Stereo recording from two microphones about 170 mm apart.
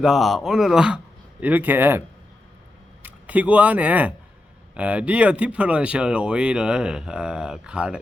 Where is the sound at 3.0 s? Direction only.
10° right (ahead or behind).